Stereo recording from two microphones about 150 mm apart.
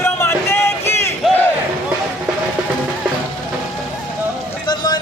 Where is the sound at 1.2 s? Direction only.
Centre (ahead or behind).